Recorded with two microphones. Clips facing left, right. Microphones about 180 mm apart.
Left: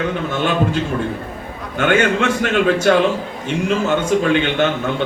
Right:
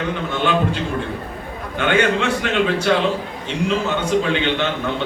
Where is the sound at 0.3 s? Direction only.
45° left (ahead or behind).